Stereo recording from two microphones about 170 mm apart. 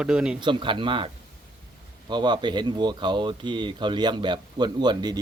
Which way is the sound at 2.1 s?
25° right (ahead or behind).